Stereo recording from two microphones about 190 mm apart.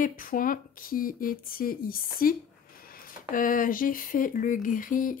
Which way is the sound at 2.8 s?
50° left (ahead or behind).